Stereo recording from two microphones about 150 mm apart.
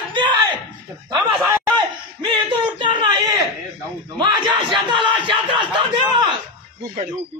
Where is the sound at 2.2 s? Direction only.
30° right (ahead or behind).